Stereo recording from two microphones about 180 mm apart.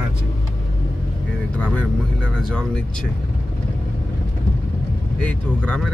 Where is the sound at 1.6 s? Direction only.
5° left (ahead or behind).